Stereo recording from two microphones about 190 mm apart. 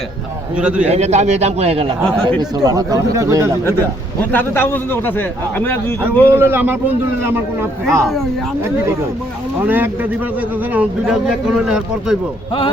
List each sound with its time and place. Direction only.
0.5 s speech: 5° right (ahead or behind)
0.9 s a man's voice: 35° right (ahead or behind)
2.4 s speech: 20° right (ahead or behind)
4.3 s speech: 10° left (ahead or behind)
6.2 s speech: 10° right (ahead or behind)
9.6 s speech: 10° right (ahead or behind)